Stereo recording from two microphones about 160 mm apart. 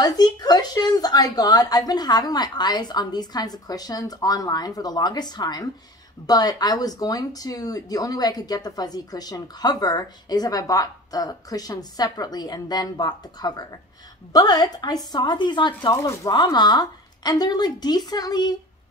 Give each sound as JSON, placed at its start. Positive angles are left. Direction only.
{"t": 0.0, "sound": "speech", "side_deg": 25}